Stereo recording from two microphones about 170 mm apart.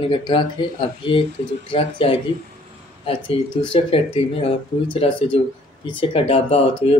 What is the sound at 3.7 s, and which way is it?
A man's voice, 35° left (ahead or behind).